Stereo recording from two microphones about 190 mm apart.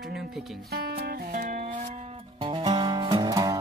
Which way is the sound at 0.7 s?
55° right (ahead or behind).